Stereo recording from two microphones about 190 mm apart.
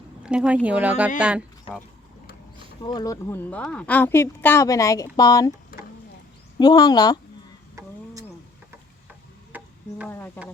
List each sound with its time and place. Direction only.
0.2 s speech: 5° right (ahead or behind)
2.8 s speech: 20° left (ahead or behind)
6.6 s speech: 20° left (ahead or behind)
9.5 s a sound: 5° right (ahead or behind)
10.1 s speech: 10° left (ahead or behind)